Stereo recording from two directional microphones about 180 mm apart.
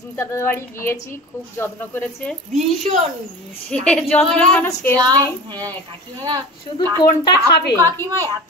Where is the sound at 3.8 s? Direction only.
5° left (ahead or behind).